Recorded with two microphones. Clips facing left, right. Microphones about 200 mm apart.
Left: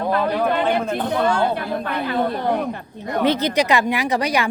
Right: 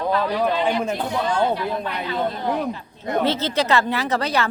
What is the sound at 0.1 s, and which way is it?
Speech, 55° left (ahead or behind).